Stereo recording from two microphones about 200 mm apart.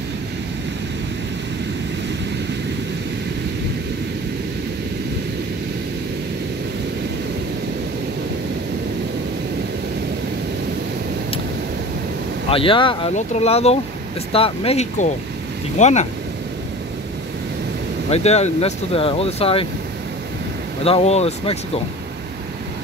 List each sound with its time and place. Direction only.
12.4 s speech: 25° left (ahead or behind)
18.1 s speech: 35° left (ahead or behind)
20.8 s speech: 30° left (ahead or behind)